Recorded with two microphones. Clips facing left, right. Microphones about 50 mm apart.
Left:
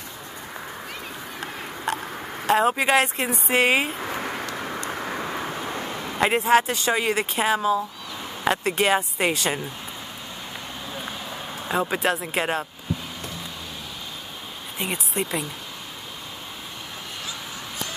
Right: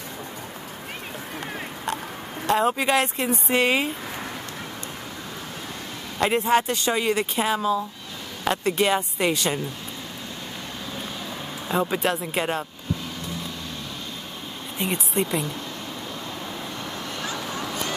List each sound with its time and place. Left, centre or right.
2.4 s speech: centre
4.6 s vehicle: left
5.0 s vehicle: left
6.1 s speech: centre
11.6 s speech: centre
14.8 s speech: centre
17.3 s a sound: right